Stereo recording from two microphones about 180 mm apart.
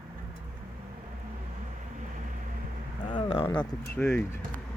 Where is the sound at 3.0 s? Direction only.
25° left (ahead or behind).